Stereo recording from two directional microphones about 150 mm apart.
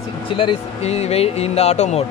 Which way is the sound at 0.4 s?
40° left (ahead or behind).